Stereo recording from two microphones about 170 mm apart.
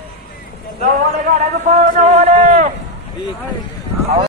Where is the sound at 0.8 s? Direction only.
45° right (ahead or behind).